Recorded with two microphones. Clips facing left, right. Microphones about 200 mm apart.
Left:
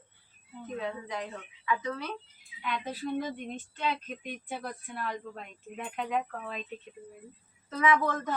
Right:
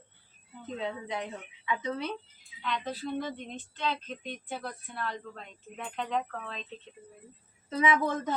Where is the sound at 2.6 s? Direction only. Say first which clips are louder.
Even; 10° left (ahead or behind).